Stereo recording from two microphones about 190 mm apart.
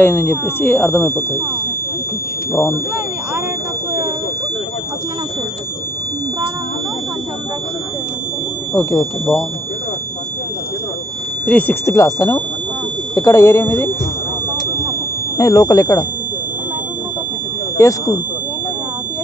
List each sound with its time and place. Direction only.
0.0 s speech: 10° left (ahead or behind)
8.7 s speech: 10° left (ahead or behind)
11.4 s speech: 10° left (ahead or behind)
15.3 s speech: 15° left (ahead or behind)
17.7 s speech: 15° left (ahead or behind)